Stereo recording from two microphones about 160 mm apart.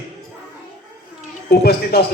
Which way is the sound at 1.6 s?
80° left.